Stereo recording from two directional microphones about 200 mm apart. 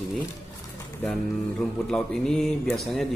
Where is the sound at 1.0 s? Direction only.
5° left (ahead or behind).